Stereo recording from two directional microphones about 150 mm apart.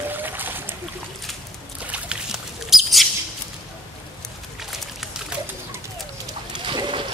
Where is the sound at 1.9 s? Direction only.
5° right (ahead or behind).